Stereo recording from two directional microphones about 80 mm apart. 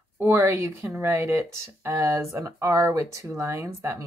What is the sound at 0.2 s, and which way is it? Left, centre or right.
Speech, right.